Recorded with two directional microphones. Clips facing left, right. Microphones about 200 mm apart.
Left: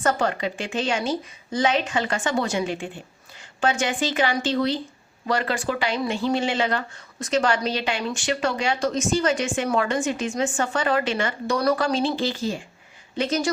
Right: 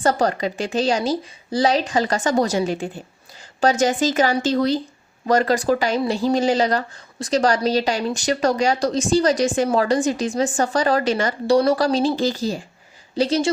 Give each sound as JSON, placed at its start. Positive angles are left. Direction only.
{"t": 0.0, "sound": "speech", "side_deg": -35}